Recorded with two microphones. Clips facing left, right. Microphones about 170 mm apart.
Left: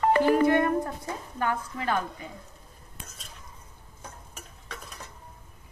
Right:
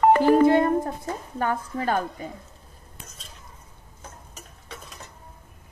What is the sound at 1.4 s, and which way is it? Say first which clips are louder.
Speech: right 3 dB; 40° right (ahead or behind).